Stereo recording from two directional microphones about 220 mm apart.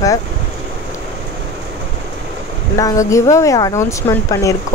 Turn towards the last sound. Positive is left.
turn(degrees=15)  # may be behind; listen again after turning